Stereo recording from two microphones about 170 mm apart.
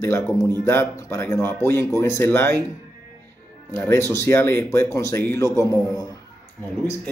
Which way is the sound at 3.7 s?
15° left (ahead or behind).